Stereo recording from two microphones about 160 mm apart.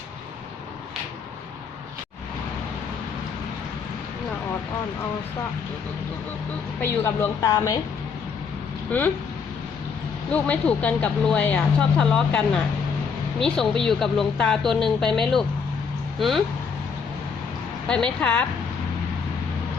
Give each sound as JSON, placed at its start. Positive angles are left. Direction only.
{"t": 6.8, "sound": "a woman's voice", "side_deg": 15}
{"t": 8.9, "sound": "speech", "side_deg": 10}
{"t": 10.3, "sound": "speech", "side_deg": 10}
{"t": 13.4, "sound": "a woman's voice", "side_deg": 5}
{"t": 17.8, "sound": "speech", "side_deg": 5}